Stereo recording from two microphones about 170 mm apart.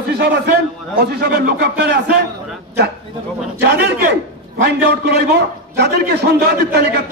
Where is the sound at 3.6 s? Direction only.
85° right.